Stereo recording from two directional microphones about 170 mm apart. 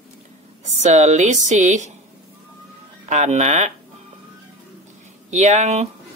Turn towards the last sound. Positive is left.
turn(degrees=-40)  # may be behind; listen again after turning